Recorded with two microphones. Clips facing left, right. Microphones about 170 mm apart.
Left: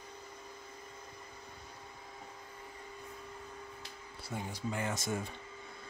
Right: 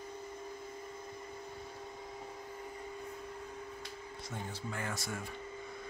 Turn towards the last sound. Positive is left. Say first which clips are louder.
# left 4 dB
turn(degrees=20)  # may be behind; listen again after turning